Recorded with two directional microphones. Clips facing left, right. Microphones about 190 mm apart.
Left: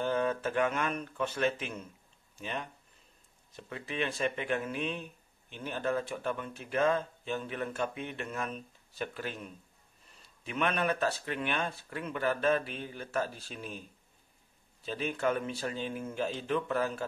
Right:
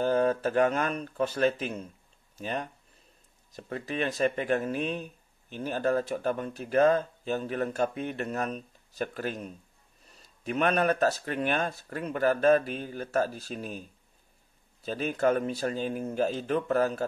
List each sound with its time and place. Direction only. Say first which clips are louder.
0.0 s speech: right 5 dB; 40° right (ahead or behind)